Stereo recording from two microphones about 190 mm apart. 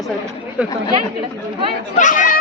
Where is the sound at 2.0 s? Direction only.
45° left (ahead or behind).